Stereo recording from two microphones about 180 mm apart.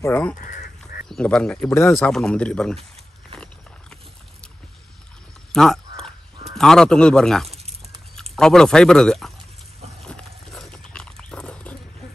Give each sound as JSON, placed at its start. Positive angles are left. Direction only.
{"t": 0.0, "sound": "speech", "side_deg": 10}
{"t": 0.4, "sound": "duck", "side_deg": 50}
{"t": 1.0, "sound": "speech", "side_deg": 5}
{"t": 2.0, "sound": "speech", "side_deg": 5}
{"t": 5.5, "sound": "a sound", "side_deg": 5}
{"t": 6.5, "sound": "speech", "side_deg": 5}
{"t": 9.9, "sound": "horse", "side_deg": 5}